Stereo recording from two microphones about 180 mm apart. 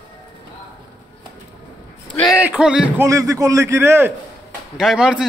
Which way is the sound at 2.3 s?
5° right (ahead or behind).